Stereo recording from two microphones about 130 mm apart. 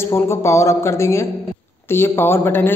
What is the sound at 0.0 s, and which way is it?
A man's voice, 20° left (ahead or behind).